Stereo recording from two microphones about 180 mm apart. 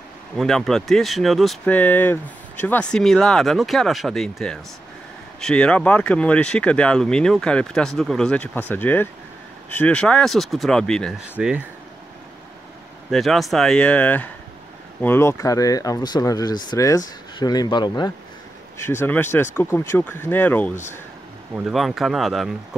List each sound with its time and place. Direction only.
0.4 s speech: centre (ahead or behind)
11.3 s speech: 10° right (ahead or behind)
13.1 s speech: centre (ahead or behind); by 18.1 s 25° left (ahead or behind)
18.8 s speech: 15° left (ahead or behind)
21.5 s speech: centre (ahead or behind)